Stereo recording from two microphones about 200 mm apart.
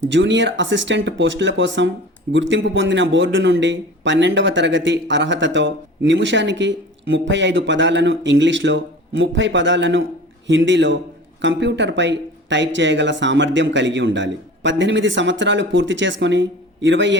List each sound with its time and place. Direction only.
0.1 s a man's voice: 65° right (ahead or behind)